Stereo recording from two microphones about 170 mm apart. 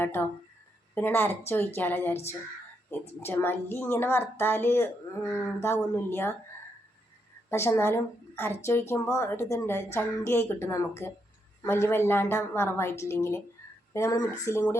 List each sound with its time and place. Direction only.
0.0 s a woman's voice: 10° left (ahead or behind)
7.5 s a woman's voice: 15° left (ahead or behind)